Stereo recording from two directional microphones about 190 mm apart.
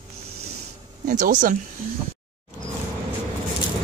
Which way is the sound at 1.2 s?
45° right (ahead or behind).